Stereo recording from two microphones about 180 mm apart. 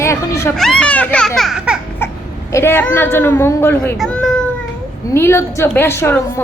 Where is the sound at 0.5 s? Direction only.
5° left (ahead or behind).